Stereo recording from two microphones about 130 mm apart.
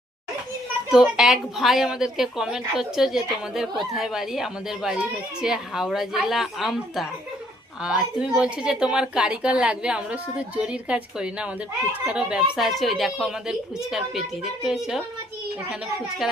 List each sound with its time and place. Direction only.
0.9 s a woman's voice: 5° right (ahead or behind)
16.2 s speech: 5° right (ahead or behind)